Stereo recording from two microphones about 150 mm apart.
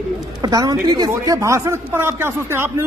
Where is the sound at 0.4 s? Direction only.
25° right (ahead or behind).